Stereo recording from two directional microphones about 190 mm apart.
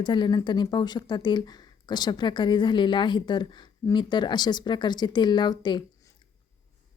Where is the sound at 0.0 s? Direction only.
25° left (ahead or behind).